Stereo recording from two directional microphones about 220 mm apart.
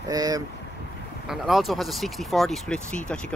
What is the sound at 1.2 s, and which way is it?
Speech, centre (ahead or behind).